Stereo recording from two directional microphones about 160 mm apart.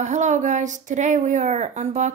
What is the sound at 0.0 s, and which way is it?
Speech, 50° right (ahead or behind).